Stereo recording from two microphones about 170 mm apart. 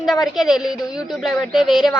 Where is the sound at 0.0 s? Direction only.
Centre (ahead or behind).